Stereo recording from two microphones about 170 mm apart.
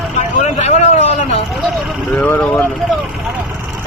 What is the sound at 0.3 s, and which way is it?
Vehicle, 40° left (ahead or behind).